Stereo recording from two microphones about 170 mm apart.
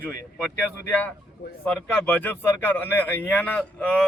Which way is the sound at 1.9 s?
10° left (ahead or behind).